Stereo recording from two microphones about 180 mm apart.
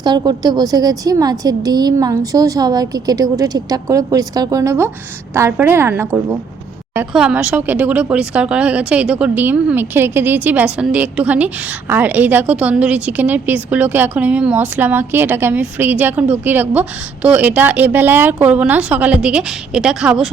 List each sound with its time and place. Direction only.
0.0 s a woman's voice: 25° right (ahead or behind); by 20.3 s 5° right (ahead or behind)